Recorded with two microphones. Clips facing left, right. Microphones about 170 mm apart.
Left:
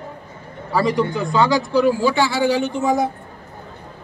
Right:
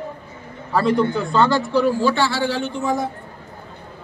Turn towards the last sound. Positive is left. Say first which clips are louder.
# left 3 dB
turn(degrees=20)  # may be behind; listen again after turning